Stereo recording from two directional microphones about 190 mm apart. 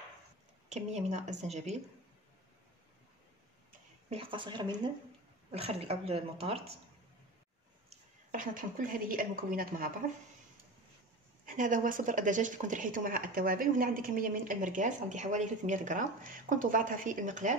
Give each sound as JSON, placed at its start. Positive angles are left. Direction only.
{"t": 0.7, "sound": "speech", "side_deg": -35}
{"t": 4.1, "sound": "speech", "side_deg": -25}
{"t": 8.3, "sound": "speech", "side_deg": -45}
{"t": 11.4, "sound": "speech", "side_deg": -45}